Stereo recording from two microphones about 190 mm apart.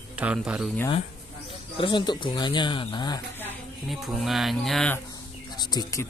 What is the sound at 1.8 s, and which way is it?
Speech, 25° left (ahead or behind).